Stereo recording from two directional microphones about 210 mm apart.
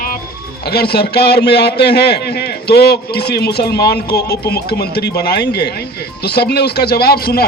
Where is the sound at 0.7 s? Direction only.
50° left (ahead or behind).